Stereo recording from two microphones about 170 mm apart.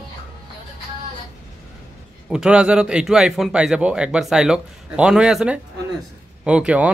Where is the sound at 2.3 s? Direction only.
5° right (ahead or behind).